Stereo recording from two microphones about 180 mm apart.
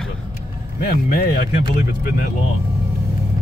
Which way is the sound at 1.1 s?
55° left (ahead or behind).